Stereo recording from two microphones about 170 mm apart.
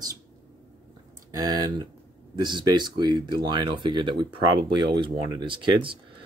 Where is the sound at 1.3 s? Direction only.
20° right (ahead or behind).